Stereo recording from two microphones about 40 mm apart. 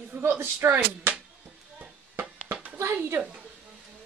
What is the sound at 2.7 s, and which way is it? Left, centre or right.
Speech, right.